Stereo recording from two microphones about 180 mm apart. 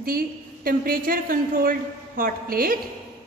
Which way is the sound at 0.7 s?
55° right (ahead or behind).